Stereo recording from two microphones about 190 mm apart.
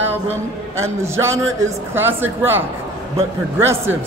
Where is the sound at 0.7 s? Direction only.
15° right (ahead or behind).